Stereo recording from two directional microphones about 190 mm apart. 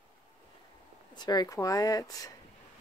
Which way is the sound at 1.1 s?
20° left (ahead or behind).